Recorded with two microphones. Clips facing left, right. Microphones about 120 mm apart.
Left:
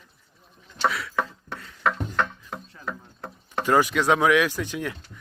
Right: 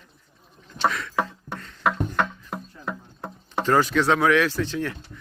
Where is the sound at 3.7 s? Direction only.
15° left (ahead or behind).